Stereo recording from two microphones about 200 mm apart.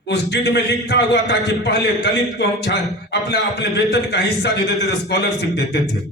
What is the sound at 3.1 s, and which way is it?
A man's voice, 60° left (ahead or behind).